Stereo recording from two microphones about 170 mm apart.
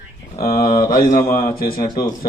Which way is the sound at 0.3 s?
60° left (ahead or behind).